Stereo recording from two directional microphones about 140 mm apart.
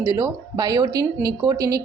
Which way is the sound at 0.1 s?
25° right (ahead or behind).